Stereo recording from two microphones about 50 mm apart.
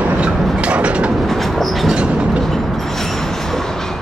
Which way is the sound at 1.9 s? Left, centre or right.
Centre.